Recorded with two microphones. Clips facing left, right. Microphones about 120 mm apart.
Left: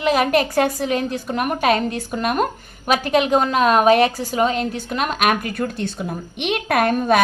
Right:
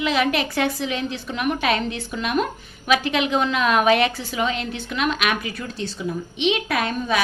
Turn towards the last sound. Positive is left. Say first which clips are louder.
# left 6 dB
turn(degrees=55)  # may be behind; listen again after turning